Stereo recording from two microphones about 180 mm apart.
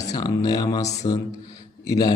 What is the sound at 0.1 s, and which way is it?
A man's voice, 20° left (ahead or behind).